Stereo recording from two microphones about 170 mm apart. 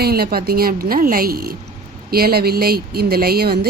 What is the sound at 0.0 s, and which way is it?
A woman's voice, 65° right (ahead or behind).